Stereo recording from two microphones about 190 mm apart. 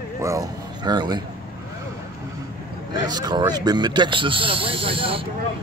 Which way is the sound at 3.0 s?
20° right (ahead or behind).